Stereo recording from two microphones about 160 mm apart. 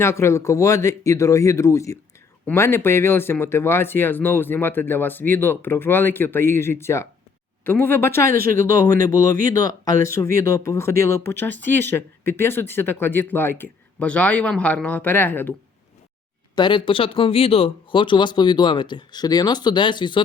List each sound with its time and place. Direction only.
0.0 s speech: 15° left (ahead or behind)
9.2 s speech: 55° right (ahead or behind)
9.5 s speech: 20° left (ahead or behind)
16.6 s speech: 30° left (ahead or behind)